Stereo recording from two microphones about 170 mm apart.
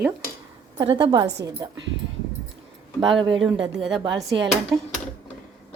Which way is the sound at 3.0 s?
30° right (ahead or behind).